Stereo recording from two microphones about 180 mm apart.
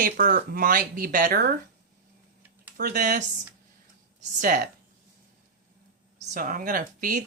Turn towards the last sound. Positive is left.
turn(degrees=-50)  # may be behind; listen again after turning